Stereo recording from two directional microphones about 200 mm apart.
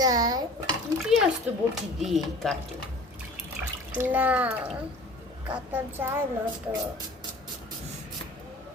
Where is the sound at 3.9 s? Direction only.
10° right (ahead or behind).